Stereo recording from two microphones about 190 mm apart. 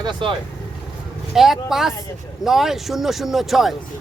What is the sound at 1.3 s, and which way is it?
Speech, centre (ahead or behind).